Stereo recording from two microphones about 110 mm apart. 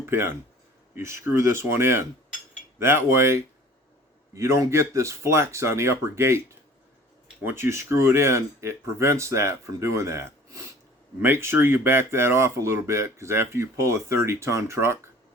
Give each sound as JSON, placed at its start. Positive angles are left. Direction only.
{"t": 0.0, "sound": "speech", "side_deg": -20}
{"t": 7.4, "sound": "speech", "side_deg": -20}